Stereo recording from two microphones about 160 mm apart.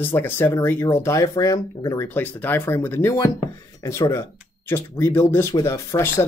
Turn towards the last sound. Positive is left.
turn(degrees=15)  # may be behind; listen again after turning